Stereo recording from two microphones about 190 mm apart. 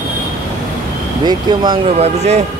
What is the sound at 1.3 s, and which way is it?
Speech, 25° right (ahead or behind).